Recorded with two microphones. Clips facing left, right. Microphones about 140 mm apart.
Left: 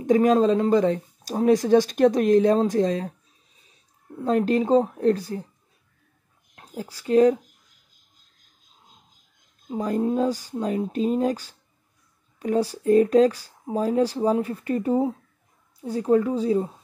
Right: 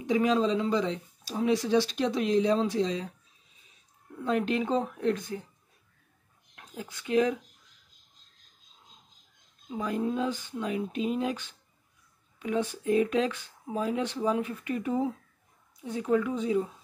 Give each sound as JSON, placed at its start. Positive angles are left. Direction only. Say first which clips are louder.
{"t": 0.0, "sound": "speech", "louder": "left 7 dB", "side_deg": 45}
{"t": 4.2, "sound": "speech", "louder": "left 6 dB", "side_deg": 40}
{"t": 6.5, "sound": "speech", "louder": "left 6 dB", "side_deg": 35}
{"t": 9.7, "sound": "speech", "louder": "left 6 dB", "side_deg": 40}